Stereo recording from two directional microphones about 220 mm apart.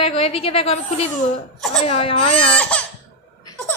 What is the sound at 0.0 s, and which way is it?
A woman's voice, 25° left (ahead or behind).